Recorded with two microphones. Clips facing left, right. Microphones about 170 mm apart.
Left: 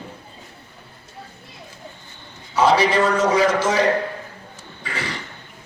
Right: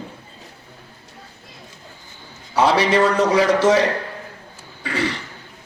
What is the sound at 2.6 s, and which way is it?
Speech, 65° right (ahead or behind).